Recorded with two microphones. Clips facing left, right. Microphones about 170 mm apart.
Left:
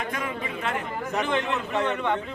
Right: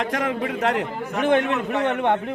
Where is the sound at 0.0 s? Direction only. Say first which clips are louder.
Right 7 dB; 80° right.